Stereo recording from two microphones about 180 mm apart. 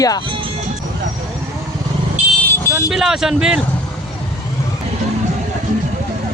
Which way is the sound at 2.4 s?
15° left (ahead or behind).